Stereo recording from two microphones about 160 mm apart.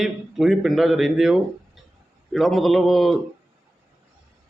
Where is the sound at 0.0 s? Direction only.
Centre (ahead or behind).